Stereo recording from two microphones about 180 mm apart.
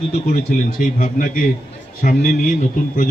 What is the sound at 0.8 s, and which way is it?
A man's voice, 50° left (ahead or behind).